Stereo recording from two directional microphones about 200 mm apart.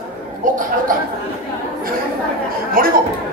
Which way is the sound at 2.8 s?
45° right (ahead or behind).